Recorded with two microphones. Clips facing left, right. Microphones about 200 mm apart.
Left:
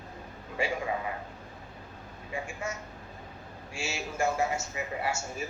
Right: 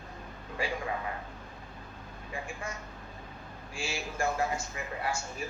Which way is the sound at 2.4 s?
25° left (ahead or behind).